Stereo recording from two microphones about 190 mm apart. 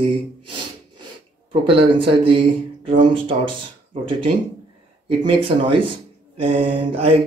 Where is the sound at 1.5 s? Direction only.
25° right (ahead or behind).